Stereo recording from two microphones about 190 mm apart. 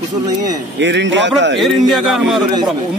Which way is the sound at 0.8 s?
70° right (ahead or behind).